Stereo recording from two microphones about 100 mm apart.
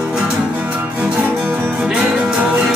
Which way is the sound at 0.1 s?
15° right (ahead or behind).